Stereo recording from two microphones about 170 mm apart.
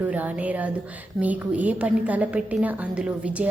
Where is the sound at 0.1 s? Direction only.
10° right (ahead or behind).